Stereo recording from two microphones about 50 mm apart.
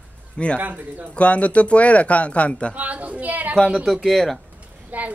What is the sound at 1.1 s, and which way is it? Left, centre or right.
Speech, left.